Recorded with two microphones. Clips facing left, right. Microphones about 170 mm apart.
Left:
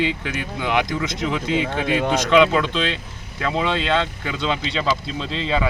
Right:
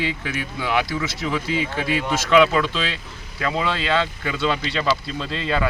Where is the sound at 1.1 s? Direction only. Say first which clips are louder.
Left 1 dB; 5° right (ahead or behind).